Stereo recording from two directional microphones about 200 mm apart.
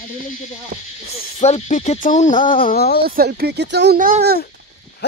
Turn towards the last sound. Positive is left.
turn(degrees=-45)  # may be behind; listen again after turning